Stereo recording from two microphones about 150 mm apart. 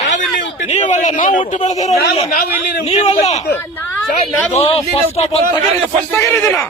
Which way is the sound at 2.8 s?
45° left (ahead or behind).